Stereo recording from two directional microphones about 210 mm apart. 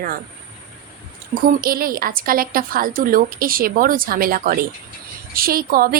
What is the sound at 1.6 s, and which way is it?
Speech, 45° right (ahead or behind).